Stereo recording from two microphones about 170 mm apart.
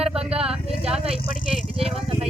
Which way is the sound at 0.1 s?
35° right (ahead or behind).